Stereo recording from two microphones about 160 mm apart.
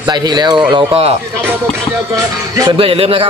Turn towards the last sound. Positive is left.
turn(degrees=-35)  # may be behind; listen again after turning